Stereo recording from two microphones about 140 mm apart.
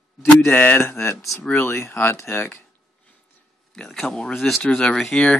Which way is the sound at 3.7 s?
5° left (ahead or behind).